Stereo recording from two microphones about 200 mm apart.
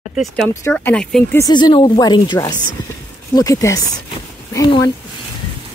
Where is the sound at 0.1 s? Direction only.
Centre (ahead or behind).